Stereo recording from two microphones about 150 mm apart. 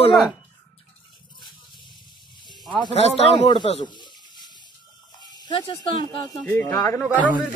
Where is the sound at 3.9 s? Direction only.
30° left (ahead or behind).